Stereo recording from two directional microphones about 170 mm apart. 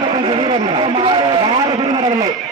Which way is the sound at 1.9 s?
25° right (ahead or behind).